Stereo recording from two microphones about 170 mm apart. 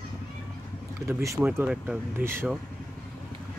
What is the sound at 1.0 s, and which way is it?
Speech, 15° right (ahead or behind).